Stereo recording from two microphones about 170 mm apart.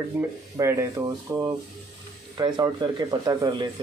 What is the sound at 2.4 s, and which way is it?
Speech, 25° right (ahead or behind).